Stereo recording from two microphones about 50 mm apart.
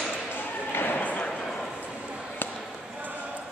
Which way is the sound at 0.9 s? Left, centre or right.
Left.